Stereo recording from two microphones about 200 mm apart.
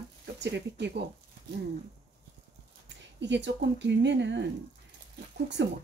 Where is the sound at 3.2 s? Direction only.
60° right (ahead or behind).